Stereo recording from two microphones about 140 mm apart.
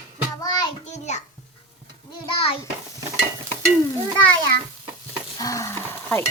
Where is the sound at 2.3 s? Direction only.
40° left (ahead or behind).